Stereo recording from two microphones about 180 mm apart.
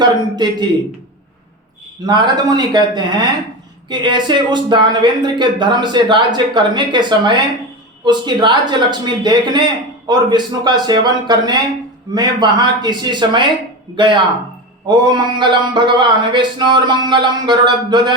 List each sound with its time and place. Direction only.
0.4 s speech: 25° right (ahead or behind)
2.0 s speech: 25° right (ahead or behind)